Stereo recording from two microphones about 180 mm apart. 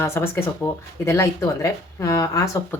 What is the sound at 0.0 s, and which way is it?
Speech, 15° left (ahead or behind).